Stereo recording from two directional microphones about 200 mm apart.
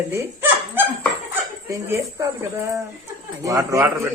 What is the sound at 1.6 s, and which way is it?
Speech, 15° right (ahead or behind).